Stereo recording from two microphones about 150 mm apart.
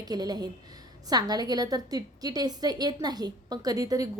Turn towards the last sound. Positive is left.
turn(degrees=-25)  # may be behind; listen again after turning